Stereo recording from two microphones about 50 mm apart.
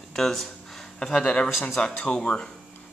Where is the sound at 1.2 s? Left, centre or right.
Left.